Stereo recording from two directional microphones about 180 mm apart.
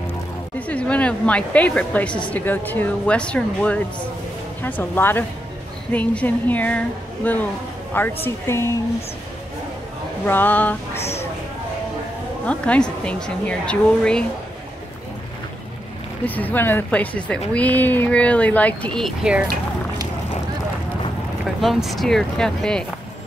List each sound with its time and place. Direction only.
0.6 s a woman's voice: 5° left (ahead or behind)
10.2 s speech: 10° left (ahead or behind)
11.0 s a sound: 35° left (ahead or behind)
12.4 s speech: 5° left (ahead or behind)
16.3 s speech: 10° left (ahead or behind)
21.5 s speech: centre (ahead or behind)